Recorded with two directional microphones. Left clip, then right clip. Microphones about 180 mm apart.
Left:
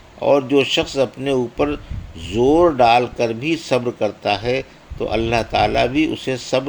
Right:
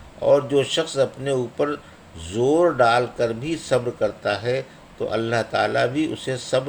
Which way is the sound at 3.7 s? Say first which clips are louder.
Even; 25° left (ahead or behind).